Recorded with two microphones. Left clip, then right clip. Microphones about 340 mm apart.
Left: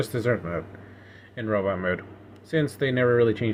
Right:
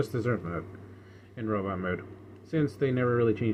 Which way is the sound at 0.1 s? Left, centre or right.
Centre.